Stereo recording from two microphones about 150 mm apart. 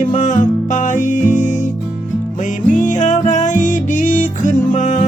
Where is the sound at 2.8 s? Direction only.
55° left (ahead or behind).